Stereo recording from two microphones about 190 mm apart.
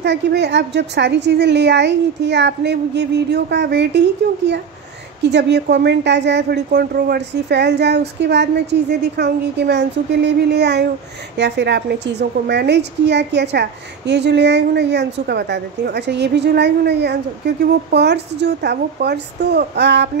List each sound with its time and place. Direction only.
0.0 s a woman's voice: 60° right (ahead or behind)
5.2 s a woman's voice: 65° right (ahead or behind)